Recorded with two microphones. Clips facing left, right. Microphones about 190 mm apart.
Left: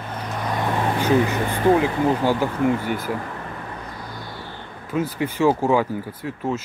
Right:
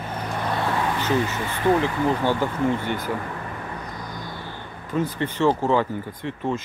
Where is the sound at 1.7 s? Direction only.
10° left (ahead or behind).